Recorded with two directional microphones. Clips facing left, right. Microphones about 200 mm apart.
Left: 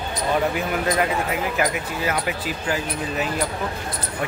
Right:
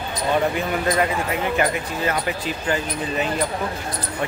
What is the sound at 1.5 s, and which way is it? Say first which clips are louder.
Speech: right 2 dB; 5° left (ahead or behind).